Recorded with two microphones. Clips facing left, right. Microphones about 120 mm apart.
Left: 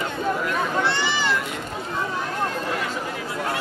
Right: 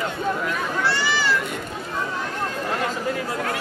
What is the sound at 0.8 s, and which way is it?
Speech, 20° left (ahead or behind).